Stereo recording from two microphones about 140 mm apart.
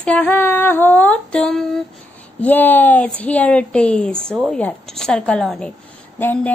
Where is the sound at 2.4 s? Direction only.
15° left (ahead or behind).